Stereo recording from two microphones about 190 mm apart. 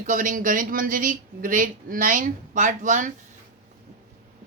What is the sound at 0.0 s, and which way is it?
Speech, 45° right (ahead or behind).